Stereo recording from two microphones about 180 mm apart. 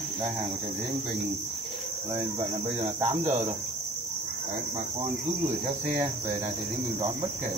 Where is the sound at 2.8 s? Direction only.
40° right (ahead or behind).